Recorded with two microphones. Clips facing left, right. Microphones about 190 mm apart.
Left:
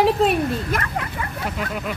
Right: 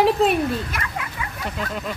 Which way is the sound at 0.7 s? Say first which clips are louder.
Left 5 dB; 45° left (ahead or behind).